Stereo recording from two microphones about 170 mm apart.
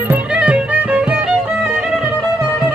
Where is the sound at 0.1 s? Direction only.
5° right (ahead or behind).